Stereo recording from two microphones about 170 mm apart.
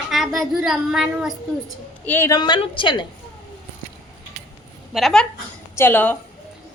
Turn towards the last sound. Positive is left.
turn(degrees=10)  # may be behind; listen again after turning